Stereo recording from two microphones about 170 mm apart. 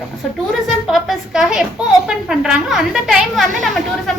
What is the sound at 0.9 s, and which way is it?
Speech, centre (ahead or behind).